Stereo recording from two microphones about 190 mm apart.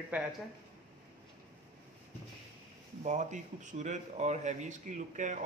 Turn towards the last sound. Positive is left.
turn(degrees=-40)  # may be behind; listen again after turning